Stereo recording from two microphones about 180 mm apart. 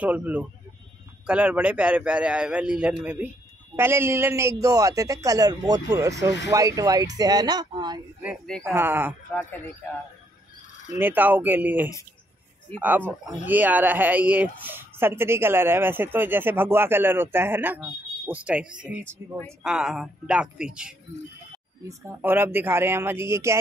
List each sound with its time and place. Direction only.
0.0 s speech: 10° right (ahead or behind); by 8.0 s 25° right (ahead or behind)
8.5 s speech: 5° left (ahead or behind)
8.7 s speech: 10° right (ahead or behind)
9.3 s speech: 10° left (ahead or behind)
11.0 s speech: 10° right (ahead or behind)